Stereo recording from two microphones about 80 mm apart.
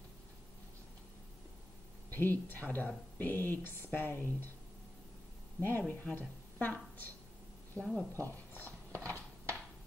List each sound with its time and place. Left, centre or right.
2.0 s speech: left
5.6 s a woman's voice: left
7.8 s speech: centre
8.3 s a sound: left